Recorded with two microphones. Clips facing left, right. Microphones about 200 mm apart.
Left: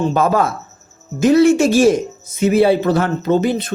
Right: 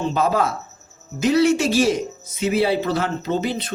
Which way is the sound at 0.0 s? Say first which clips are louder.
Left 4 dB; 50° left (ahead or behind).